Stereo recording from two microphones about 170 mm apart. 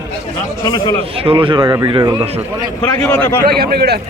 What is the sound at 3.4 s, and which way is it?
Speech, 65° right (ahead or behind).